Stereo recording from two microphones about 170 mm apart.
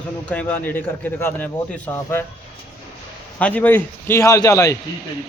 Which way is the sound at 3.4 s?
10° left (ahead or behind).